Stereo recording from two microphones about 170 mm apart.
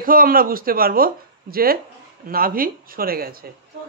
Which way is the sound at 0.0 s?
55° right (ahead or behind).